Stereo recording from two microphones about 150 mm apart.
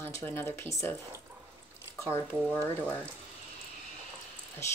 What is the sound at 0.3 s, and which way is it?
Speech, 15° left (ahead or behind).